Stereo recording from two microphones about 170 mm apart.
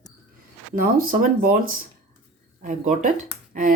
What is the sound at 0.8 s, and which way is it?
Speech, 55° right (ahead or behind).